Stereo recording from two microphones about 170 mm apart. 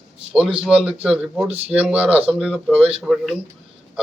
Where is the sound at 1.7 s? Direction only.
10° right (ahead or behind).